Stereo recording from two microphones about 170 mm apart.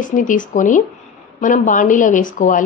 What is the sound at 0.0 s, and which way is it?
A woman's voice, 50° left (ahead or behind).